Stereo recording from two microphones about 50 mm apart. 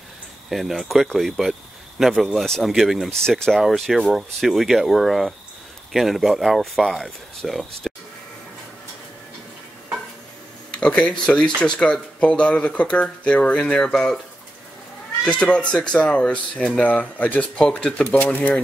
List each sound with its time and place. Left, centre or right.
0.5 s speech: centre
3.2 s speech: centre
3.6 s speech: centre
10.7 s speech: left
15.2 s speech: left
17.0 s speech: left
17.6 s speech: centre
18.0 s speech: left